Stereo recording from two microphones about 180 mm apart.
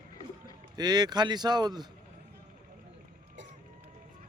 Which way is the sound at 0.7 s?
25° right (ahead or behind).